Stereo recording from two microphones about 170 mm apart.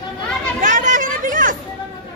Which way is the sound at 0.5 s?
50° right (ahead or behind).